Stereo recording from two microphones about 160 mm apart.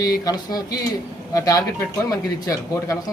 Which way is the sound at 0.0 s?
25° left (ahead or behind).